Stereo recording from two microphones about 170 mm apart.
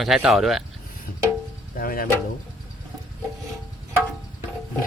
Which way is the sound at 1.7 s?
60° left (ahead or behind).